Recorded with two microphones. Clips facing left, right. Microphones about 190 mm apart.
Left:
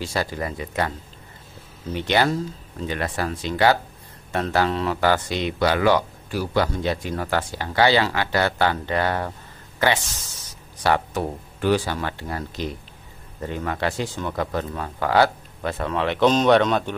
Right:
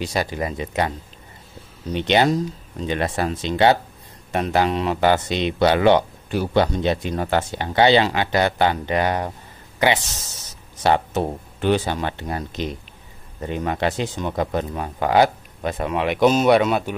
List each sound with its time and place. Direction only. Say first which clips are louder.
0.0 s speech: right 2 dB; 20° right (ahead or behind)